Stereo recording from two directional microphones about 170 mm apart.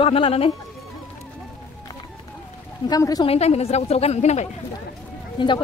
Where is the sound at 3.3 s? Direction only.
40° left (ahead or behind).